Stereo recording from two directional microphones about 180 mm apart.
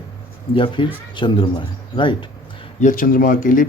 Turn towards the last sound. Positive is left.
turn(degrees=50)  # may be behind; listen again after turning